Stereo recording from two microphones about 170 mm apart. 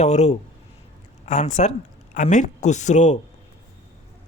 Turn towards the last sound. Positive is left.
turn(degrees=45)  # may be behind; listen again after turning